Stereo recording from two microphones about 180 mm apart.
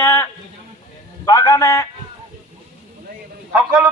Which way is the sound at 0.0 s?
15° left (ahead or behind).